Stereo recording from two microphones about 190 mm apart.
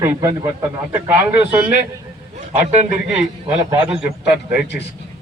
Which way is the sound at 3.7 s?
5° right (ahead or behind).